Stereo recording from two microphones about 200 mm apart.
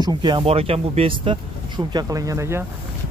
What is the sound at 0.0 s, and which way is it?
Speech, 20° right (ahead or behind).